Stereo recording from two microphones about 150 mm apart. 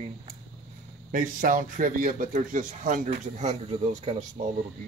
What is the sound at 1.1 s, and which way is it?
Speech, 65° right (ahead or behind).